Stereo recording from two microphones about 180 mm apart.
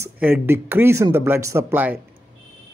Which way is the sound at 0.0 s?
10° right (ahead or behind).